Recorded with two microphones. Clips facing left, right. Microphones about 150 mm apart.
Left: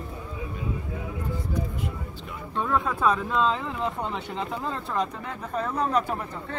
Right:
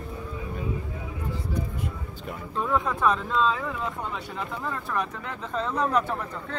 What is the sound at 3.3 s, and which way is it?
Speech, 20° left (ahead or behind).